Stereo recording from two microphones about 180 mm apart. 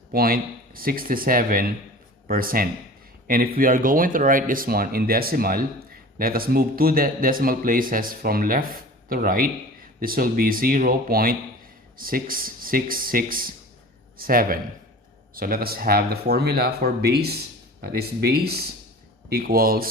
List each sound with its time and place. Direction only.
0.1 s speech: 55° right (ahead or behind)